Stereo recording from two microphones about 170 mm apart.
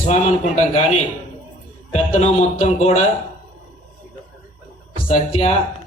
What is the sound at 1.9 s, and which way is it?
Speech, 40° left (ahead or behind).